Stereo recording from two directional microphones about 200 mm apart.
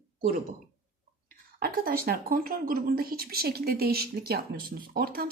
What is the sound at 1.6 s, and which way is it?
A woman's voice, 45° right (ahead or behind).